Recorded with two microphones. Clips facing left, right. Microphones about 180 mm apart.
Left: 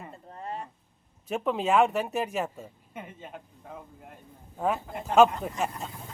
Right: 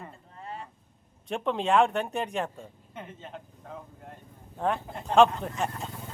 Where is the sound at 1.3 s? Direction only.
5° left (ahead or behind).